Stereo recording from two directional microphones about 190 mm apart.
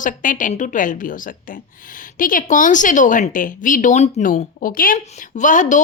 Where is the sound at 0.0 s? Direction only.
45° left (ahead or behind).